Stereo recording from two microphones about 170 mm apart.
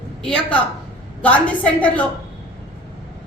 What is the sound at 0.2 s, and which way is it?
A woman's voice, 5° left (ahead or behind).